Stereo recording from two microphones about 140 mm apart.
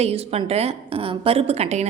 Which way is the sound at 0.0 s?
45° right (ahead or behind).